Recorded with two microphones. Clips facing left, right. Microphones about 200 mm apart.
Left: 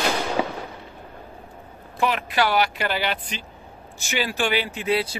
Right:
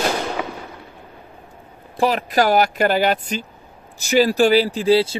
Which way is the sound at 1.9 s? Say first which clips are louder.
Right 5 dB; 35° right (ahead or behind).